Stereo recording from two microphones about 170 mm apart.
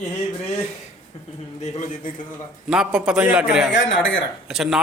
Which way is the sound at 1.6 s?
45° left (ahead or behind).